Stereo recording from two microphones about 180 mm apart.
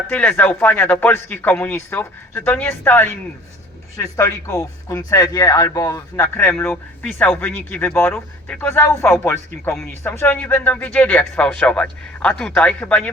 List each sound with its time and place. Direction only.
0.1 s speech: 10° left (ahead or behind)